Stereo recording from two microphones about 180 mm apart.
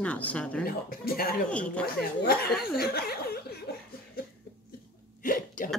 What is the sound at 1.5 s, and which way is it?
Speech, 5° left (ahead or behind).